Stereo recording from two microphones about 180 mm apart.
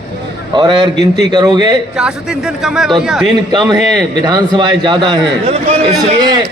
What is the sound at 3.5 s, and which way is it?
A man's voice, 20° right (ahead or behind).